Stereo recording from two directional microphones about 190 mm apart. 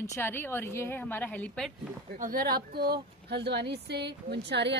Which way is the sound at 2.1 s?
45° right (ahead or behind).